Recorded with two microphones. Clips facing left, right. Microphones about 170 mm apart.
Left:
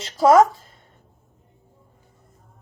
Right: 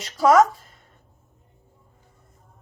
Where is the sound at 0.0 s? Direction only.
25° left (ahead or behind).